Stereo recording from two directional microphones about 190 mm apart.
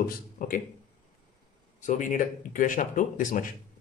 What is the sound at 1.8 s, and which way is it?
Speech, 40° left (ahead or behind).